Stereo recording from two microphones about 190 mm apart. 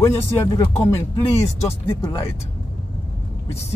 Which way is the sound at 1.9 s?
20° left (ahead or behind).